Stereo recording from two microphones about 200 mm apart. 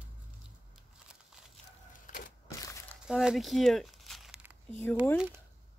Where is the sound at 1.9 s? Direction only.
40° left (ahead or behind).